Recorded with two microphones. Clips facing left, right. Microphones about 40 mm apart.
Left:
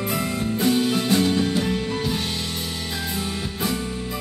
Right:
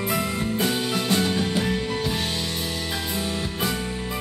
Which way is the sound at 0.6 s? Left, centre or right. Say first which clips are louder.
Left 6 dB; centre.